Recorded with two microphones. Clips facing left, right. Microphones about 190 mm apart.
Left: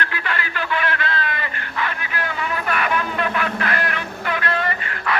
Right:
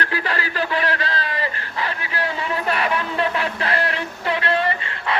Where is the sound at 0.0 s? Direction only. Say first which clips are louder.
Right 2 dB; 35° right (ahead or behind).